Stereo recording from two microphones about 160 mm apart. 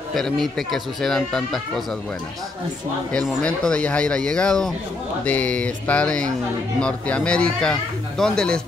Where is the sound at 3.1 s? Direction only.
5° left (ahead or behind).